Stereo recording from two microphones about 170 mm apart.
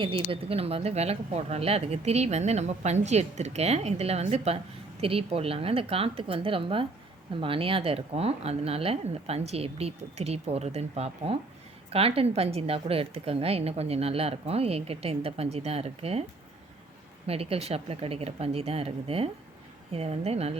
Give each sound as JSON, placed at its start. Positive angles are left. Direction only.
{"t": 0.0, "sound": "speech", "side_deg": -30}
{"t": 17.2, "sound": "speech", "side_deg": -35}